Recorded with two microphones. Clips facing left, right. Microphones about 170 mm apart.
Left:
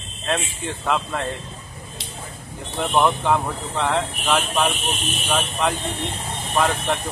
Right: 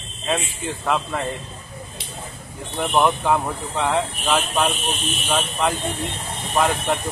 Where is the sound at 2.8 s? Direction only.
5° right (ahead or behind).